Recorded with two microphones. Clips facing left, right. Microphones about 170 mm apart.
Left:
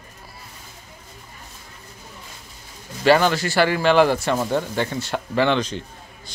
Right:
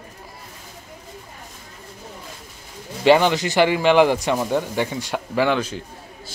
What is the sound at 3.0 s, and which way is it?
Speech, 15° right (ahead or behind).